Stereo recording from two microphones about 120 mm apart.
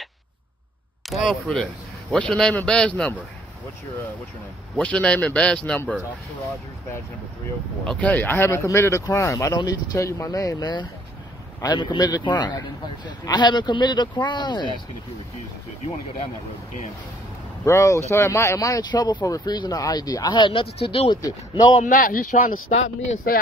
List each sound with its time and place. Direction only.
1.1 s speech: centre (ahead or behind)
4.7 s speech: 10° left (ahead or behind)
7.8 s a man's voice: 10° left (ahead or behind); by 14.7 s 40° left (ahead or behind)
17.6 s a man's voice: 25° left (ahead or behind); by 21.1 s 50° left (ahead or behind)
21.1 s a man's voice: 40° left (ahead or behind)
21.8 s speech: 80° left